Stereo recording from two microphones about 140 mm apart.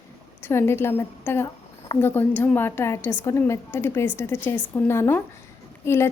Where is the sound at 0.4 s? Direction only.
15° left (ahead or behind).